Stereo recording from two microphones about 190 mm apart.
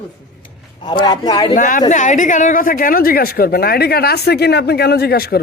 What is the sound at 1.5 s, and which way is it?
A woman's voice, 45° left (ahead or behind).